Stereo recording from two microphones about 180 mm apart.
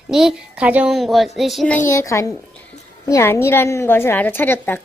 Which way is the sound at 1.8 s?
15° left (ahead or behind).